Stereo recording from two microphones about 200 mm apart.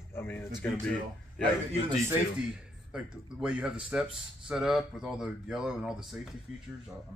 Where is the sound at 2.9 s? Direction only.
5° right (ahead or behind).